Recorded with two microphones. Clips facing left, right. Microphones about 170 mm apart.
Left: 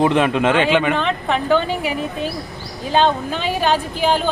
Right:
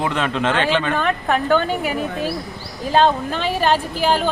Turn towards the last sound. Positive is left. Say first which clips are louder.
# even
turn(degrees=0)  # may be behind; listen again after turning